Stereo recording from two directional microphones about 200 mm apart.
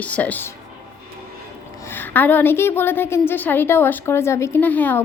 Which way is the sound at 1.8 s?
10° left (ahead or behind).